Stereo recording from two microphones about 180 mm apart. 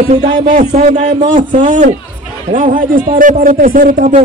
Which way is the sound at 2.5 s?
50° right (ahead or behind).